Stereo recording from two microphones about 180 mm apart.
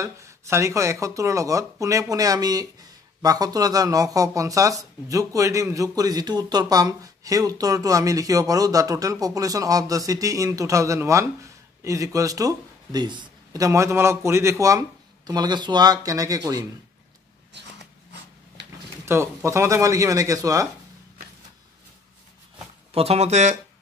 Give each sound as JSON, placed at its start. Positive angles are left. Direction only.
{"t": 0.0, "sound": "speech", "side_deg": -15}
{"t": 19.0, "sound": "speech", "side_deg": -15}
{"t": 22.9, "sound": "speech", "side_deg": -35}